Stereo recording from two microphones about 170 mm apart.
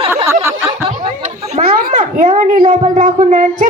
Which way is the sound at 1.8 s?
55° right (ahead or behind).